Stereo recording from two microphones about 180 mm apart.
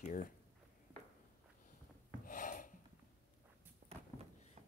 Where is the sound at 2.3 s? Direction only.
50° left (ahead or behind).